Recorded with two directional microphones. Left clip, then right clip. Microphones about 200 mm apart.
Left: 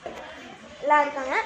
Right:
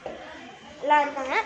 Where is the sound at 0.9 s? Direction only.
10° left (ahead or behind).